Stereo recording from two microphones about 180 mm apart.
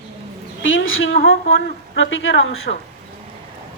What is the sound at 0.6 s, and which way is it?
Speech, 90° left.